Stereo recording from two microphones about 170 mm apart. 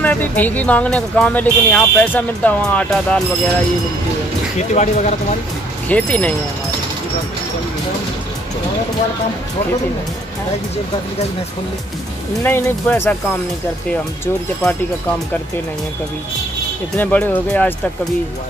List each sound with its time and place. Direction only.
0.0 s speech: 10° left (ahead or behind)
4.6 s speech: 45° left (ahead or behind)
5.9 s speech: 10° left (ahead or behind)
12.4 s speech: 15° left (ahead or behind)
17.0 s speech: 10° left (ahead or behind)